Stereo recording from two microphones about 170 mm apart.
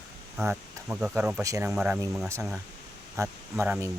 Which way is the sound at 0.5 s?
5° right (ahead or behind).